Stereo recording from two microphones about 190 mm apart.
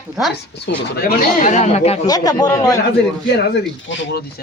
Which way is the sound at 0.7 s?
55° left (ahead or behind).